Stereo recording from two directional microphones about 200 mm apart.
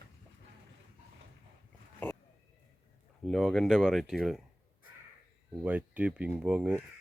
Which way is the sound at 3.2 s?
Centre (ahead or behind).